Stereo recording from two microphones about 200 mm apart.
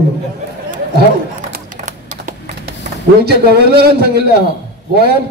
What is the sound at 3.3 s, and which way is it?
A man's voice, 50° right (ahead or behind).